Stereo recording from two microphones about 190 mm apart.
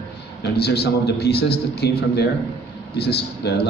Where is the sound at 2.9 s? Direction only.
60° left (ahead or behind).